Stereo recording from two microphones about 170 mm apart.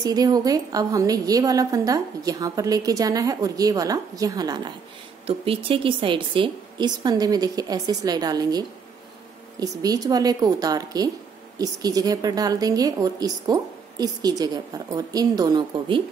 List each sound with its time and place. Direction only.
0.0 s a woman's voice: 20° right (ahead or behind)